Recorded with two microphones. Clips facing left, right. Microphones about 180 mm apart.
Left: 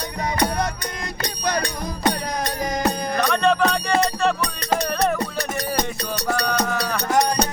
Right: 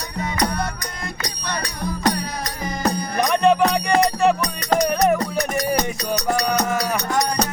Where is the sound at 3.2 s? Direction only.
15° right (ahead or behind).